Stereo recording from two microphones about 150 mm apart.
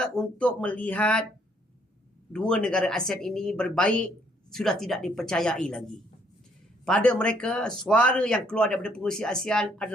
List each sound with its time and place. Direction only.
0.0 s speech: 5° left (ahead or behind)
2.3 s speech: 5° left (ahead or behind)
6.8 s speech: 5° left (ahead or behind)